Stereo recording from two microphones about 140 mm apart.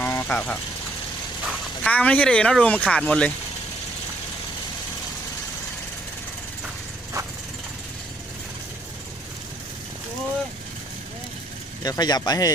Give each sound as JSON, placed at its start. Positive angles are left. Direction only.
{"t": 0.0, "sound": "vehicle", "side_deg": 15}
{"t": 1.5, "sound": "speech", "side_deg": 5}
{"t": 11.8, "sound": "speech", "side_deg": 30}